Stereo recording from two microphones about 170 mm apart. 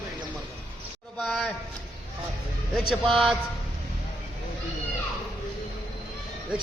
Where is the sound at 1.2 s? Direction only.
Centre (ahead or behind).